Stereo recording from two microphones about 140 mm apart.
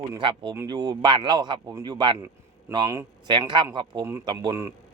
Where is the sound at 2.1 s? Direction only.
20° right (ahead or behind).